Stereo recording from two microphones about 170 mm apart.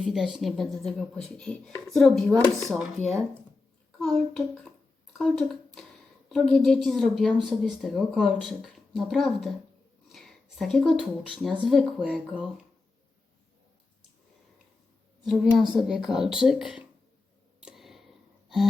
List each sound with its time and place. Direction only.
0.0 s speech: centre (ahead or behind)
3.0 s speech: 40° left (ahead or behind)
4.0 s speech: centre (ahead or behind)
15.2 s speech: centre (ahead or behind)
17.6 s a sound: 5° right (ahead or behind)